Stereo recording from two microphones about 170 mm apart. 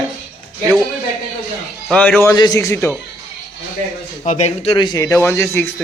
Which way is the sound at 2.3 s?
20° left (ahead or behind).